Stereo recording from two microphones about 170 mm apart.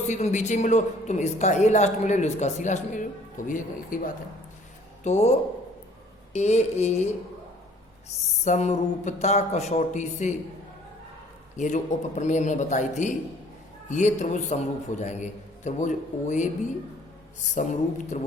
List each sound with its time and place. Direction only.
0.1 s speech: 40° left (ahead or behind)
5.0 s mantra: 40° left (ahead or behind)
8.4 s speech: 40° left (ahead or behind)
11.5 s speech: 45° left (ahead or behind)
17.5 s speech: 45° left (ahead or behind)